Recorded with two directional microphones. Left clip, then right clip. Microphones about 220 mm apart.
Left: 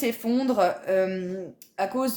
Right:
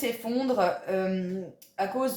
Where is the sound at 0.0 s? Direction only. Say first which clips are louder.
Left 3 dB; 50° left (ahead or behind).